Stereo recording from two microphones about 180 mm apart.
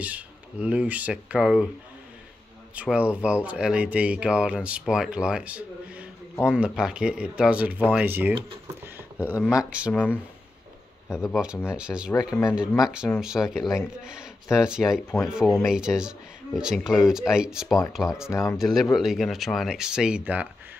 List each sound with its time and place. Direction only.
0.0 s speech: 10° right (ahead or behind)
2.7 s speech: 5° right (ahead or behind)
8.8 s a sound: 10° right (ahead or behind)
9.9 s speech: 10° left (ahead or behind)
11.1 s speech: 5° right (ahead or behind)
18.3 s speech: 15° left (ahead or behind)
18.6 s speech: centre (ahead or behind)